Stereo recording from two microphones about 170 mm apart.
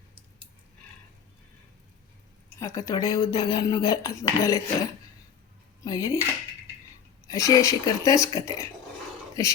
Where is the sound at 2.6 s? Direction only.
20° left (ahead or behind).